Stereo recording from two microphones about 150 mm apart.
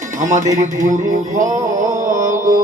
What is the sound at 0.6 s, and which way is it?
Mantra, 55° right (ahead or behind).